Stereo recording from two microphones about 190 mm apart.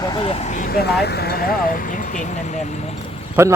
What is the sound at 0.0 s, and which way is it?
Speech, 25° left (ahead or behind).